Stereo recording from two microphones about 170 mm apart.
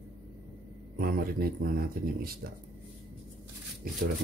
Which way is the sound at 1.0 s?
60° right (ahead or behind).